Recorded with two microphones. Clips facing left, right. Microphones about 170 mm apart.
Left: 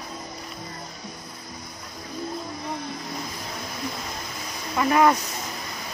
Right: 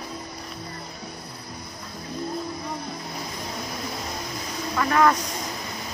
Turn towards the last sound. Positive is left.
turn(degrees=10)  # may be behind; listen again after turning